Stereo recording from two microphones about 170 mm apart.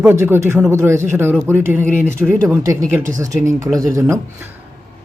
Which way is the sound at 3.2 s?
20° right (ahead or behind).